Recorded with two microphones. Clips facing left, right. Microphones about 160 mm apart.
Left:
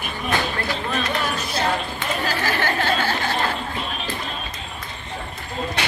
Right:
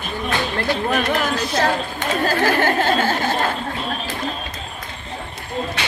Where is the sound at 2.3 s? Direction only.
50° right (ahead or behind).